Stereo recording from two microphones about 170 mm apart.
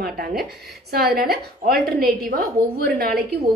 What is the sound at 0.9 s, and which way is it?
A woman's voice, 65° right (ahead or behind).